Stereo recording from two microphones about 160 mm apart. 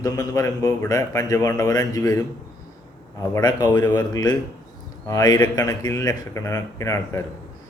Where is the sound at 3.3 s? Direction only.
25° left (ahead or behind).